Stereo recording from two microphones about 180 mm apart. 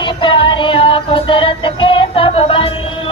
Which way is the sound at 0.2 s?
30° left (ahead or behind).